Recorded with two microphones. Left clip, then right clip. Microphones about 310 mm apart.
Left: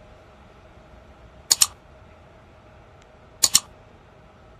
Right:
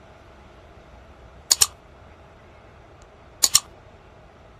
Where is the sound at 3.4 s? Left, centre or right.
Centre.